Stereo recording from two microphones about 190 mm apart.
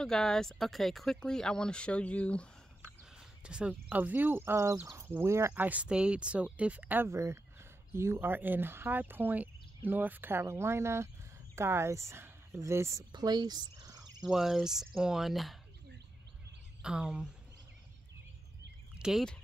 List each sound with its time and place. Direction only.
0.0 s speech: 5° left (ahead or behind)
2.8 s speech: 5° right (ahead or behind); by 13.9 s 20° right (ahead or behind)
14.2 s speech: centre (ahead or behind)
16.8 s speech: 5° right (ahead or behind)
18.9 s speech: centre (ahead or behind)